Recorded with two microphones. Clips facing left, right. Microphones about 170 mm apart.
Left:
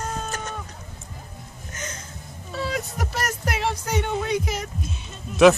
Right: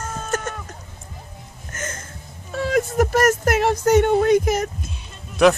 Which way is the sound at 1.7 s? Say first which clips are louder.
Right 4 dB; 50° right (ahead or behind).